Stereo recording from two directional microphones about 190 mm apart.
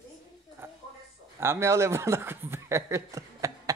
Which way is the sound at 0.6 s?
10° right (ahead or behind).